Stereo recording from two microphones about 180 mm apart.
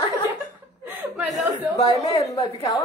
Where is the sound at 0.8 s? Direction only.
10° right (ahead or behind).